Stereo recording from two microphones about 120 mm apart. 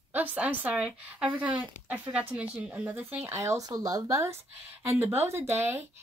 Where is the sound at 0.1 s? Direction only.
15° right (ahead or behind).